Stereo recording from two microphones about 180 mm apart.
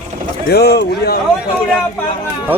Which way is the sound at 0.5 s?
65° left (ahead or behind).